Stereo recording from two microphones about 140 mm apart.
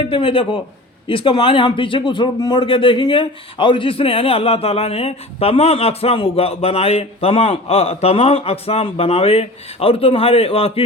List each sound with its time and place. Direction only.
0.0 s speech: 40° left (ahead or behind)